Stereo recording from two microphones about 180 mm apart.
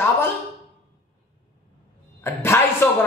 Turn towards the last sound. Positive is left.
turn(degrees=15)  # may be behind; listen again after turning